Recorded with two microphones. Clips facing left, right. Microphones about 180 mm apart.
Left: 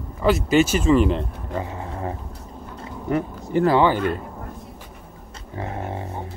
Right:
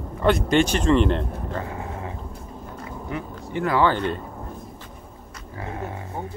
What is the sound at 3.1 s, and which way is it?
Speech, 40° left (ahead or behind).